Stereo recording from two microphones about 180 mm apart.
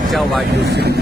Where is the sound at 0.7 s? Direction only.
65° right (ahead or behind).